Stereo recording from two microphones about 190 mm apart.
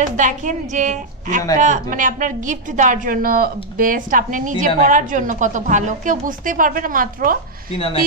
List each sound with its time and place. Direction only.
0.0 s a woman's voice: 40° right (ahead or behind)